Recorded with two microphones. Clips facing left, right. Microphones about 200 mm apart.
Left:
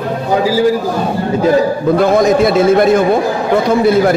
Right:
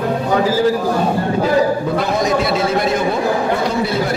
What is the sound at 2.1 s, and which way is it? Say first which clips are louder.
Speech: left 5 dB; 50° left (ahead or behind).